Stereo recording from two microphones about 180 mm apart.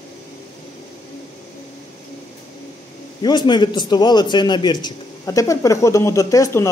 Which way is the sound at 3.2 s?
25° left (ahead or behind).